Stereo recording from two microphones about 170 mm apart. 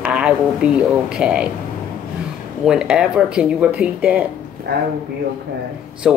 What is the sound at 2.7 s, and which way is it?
Speech, 5° right (ahead or behind).